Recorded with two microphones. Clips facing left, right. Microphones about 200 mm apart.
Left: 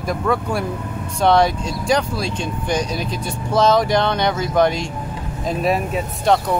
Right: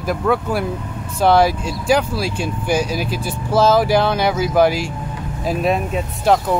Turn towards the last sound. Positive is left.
turn(degrees=0)  # may be behind; listen again after turning